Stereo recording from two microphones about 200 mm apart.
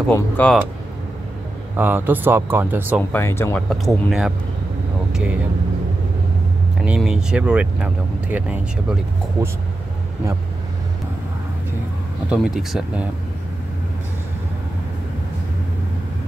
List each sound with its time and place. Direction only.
0.1 s speech: 5° left (ahead or behind)
1.8 s speech: 10° right (ahead or behind)
3.0 s speech: 10° left (ahead or behind)
3.7 s speech: centre (ahead or behind)
6.8 s speech: 5° right (ahead or behind)
12.3 s speech: 5° right (ahead or behind)